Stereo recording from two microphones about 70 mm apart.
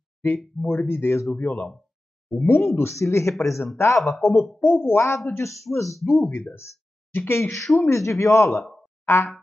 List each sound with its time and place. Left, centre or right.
0.7 s speech: left
4.0 s speech: centre
4.6 s a woman's voice: centre
4.9 s speech: left
5.9 s speech: centre
6.5 s a sound: left
7.2 s speech: left
9.0 s boing: left